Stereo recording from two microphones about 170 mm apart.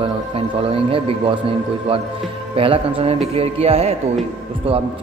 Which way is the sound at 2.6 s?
30° right (ahead or behind).